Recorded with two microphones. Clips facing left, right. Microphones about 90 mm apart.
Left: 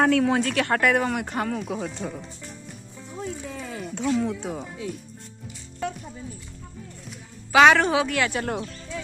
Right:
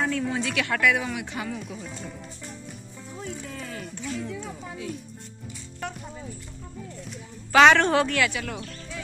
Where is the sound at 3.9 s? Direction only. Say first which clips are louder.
Left 10 dB; 90° left.